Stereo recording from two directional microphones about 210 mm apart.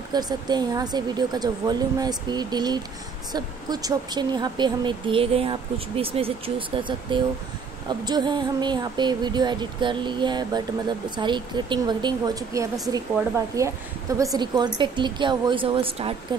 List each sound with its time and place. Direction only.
0.1 s a woman's voice: 20° right (ahead or behind)